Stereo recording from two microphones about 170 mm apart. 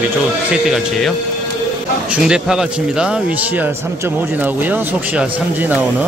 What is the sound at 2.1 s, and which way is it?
A man's voice, 5° right (ahead or behind).